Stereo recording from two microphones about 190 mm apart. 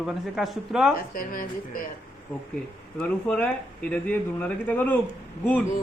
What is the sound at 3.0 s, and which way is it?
Speech, 5° left (ahead or behind).